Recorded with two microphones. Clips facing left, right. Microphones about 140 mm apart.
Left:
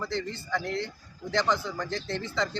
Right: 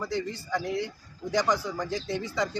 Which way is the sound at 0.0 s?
10° right (ahead or behind).